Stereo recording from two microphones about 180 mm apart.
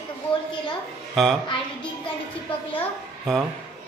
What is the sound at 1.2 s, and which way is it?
Speech, centre (ahead or behind).